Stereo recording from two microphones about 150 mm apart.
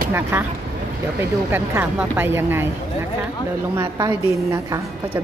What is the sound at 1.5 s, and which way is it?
Speech, 15° right (ahead or behind).